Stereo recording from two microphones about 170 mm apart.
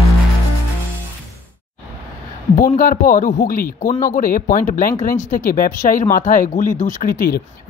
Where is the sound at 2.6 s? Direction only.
55° left (ahead or behind).